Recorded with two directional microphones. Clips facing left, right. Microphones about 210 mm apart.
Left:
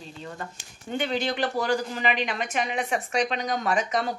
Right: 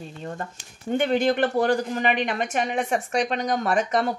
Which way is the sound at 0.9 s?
50° right (ahead or behind).